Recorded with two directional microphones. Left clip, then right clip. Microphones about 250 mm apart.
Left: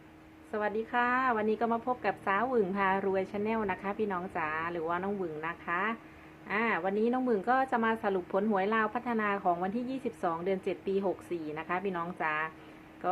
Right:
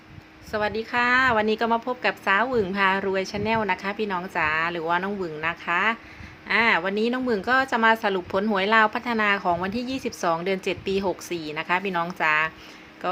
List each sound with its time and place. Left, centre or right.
0.5 s a woman's voice: centre